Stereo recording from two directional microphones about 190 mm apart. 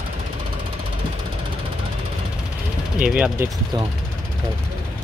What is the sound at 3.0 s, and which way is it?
Speech, 5° right (ahead or behind).